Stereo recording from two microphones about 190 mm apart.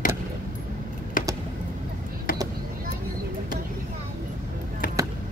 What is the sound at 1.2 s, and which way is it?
Computer keyboard, 45° left (ahead or behind).